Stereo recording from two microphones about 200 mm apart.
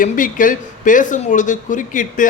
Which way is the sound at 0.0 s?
40° left (ahead or behind).